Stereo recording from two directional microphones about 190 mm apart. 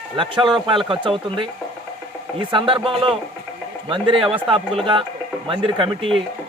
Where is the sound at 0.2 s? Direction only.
25° right (ahead or behind).